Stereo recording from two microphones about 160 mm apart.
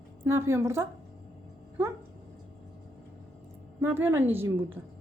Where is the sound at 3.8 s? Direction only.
15° right (ahead or behind).